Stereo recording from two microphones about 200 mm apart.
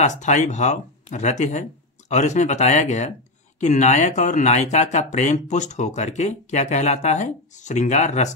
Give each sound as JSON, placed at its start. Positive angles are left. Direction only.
{"t": 0.0, "sound": "speech", "side_deg": 35}